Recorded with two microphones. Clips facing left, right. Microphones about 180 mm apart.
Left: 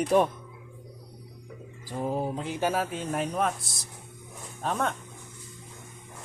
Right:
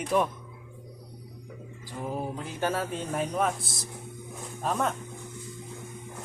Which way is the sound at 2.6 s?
5° left (ahead or behind).